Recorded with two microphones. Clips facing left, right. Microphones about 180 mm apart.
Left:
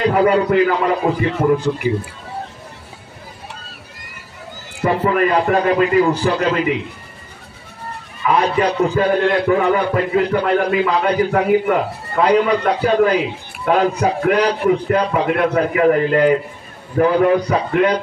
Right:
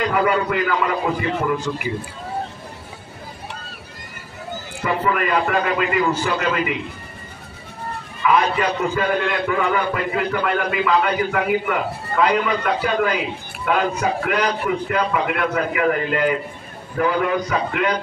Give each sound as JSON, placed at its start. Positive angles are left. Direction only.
{"t": 0.0, "sound": "a man's voice", "side_deg": 35}
{"t": 4.8, "sound": "a man's voice", "side_deg": 35}
{"t": 8.3, "sound": "a man's voice", "side_deg": 35}